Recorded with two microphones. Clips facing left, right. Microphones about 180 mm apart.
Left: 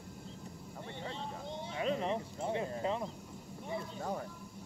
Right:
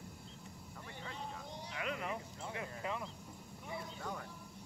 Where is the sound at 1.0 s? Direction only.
25° left (ahead or behind).